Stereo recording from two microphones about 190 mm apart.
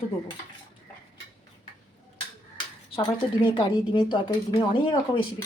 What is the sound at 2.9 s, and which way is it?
A woman's voice, 25° left (ahead or behind).